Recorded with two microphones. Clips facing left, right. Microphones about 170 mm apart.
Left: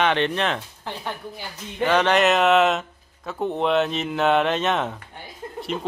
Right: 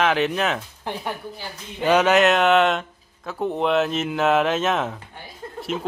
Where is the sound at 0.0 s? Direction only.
5° right (ahead or behind).